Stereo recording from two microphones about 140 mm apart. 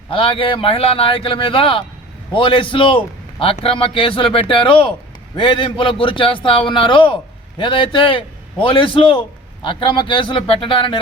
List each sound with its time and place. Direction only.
0.1 s a man's voice: 40° left (ahead or behind)